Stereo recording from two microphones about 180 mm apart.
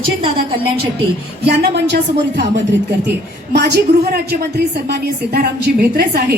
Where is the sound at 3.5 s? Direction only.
65° right (ahead or behind).